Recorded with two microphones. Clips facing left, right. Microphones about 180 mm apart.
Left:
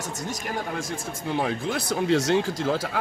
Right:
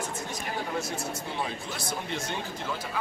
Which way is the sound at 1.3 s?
75° left (ahead or behind).